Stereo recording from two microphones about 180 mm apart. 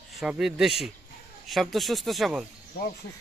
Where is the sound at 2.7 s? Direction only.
60° left (ahead or behind).